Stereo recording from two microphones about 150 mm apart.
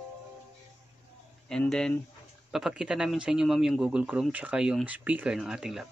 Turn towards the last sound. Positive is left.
turn(degrees=-5)  # may be behind; listen again after turning